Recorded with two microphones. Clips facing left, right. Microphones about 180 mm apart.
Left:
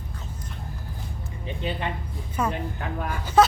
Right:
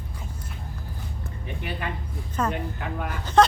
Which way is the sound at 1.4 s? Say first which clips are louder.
Left 4 dB; 25° left (ahead or behind).